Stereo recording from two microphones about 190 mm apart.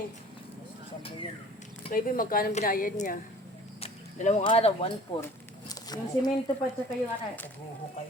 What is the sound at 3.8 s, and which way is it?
Speech, 35° left (ahead or behind).